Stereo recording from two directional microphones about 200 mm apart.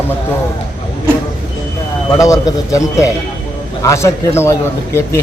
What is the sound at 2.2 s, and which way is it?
A man's voice, 15° left (ahead or behind).